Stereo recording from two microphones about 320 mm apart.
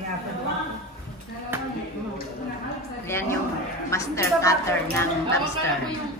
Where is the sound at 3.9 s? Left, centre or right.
Centre.